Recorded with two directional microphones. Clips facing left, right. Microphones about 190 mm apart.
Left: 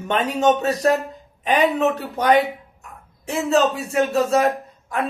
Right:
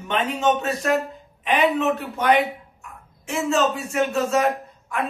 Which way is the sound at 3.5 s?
35° left (ahead or behind).